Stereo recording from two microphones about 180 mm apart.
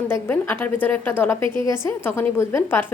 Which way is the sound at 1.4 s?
30° right (ahead or behind).